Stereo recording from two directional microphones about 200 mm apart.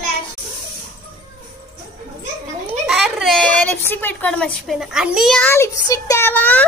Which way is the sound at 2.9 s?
Centre (ahead or behind).